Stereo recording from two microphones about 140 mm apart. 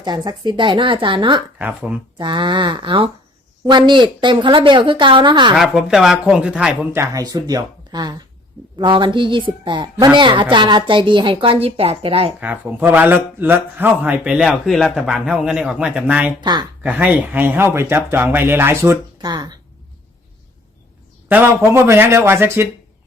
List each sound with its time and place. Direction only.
0.0 s a woman's voice: 30° right (ahead or behind)
1.5 s a man's voice: 10° right (ahead or behind)
2.1 s a woman's voice: 35° right (ahead or behind)
5.5 s speech: centre (ahead or behind)
6.9 s a woman's voice: 20° right (ahead or behind); by 12.3 s 45° right (ahead or behind)
12.4 s a man's voice: 10° right (ahead or behind)
16.4 s a woman's voice: 30° right (ahead or behind)
16.8 s a man's voice: 10° right (ahead or behind)
19.3 s speech: 30° right (ahead or behind)
21.2 s a man's voice: 10° right (ahead or behind)